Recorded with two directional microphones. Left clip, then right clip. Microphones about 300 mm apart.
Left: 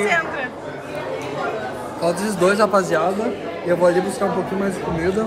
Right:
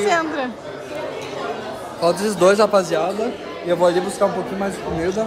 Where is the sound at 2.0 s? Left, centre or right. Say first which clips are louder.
Right 3 dB; centre.